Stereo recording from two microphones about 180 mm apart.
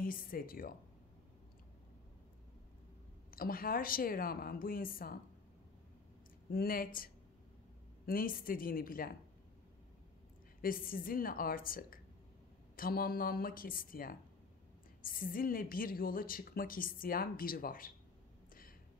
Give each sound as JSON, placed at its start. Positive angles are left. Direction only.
{"t": 0.0, "sound": "a woman's voice", "side_deg": 50}
{"t": 3.3, "sound": "a woman's voice", "side_deg": 55}
{"t": 6.5, "sound": "a woman's voice", "side_deg": 55}
{"t": 10.6, "sound": "a woman's voice", "side_deg": 55}
{"t": 18.5, "sound": "a sound", "side_deg": 50}